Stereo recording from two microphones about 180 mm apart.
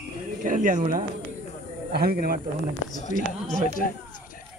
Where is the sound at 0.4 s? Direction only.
45° right (ahead or behind).